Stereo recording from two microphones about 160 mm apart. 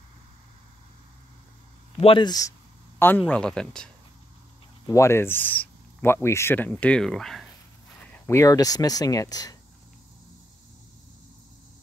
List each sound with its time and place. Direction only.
2.0 s speech: 35° left (ahead or behind)
3.3 s speech: 5° left (ahead or behind)
4.8 s speech: 20° left (ahead or behind); by 7.4 s centre (ahead or behind)
8.3 s speech: 20° left (ahead or behind)